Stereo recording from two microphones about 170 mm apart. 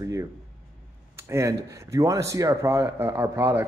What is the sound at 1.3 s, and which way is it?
A man's voice, 15° right (ahead or behind).